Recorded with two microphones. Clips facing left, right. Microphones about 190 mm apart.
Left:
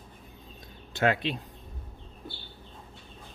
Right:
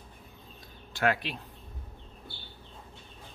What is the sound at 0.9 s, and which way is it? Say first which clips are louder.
Speech: left 3 dB; 20° left (ahead or behind).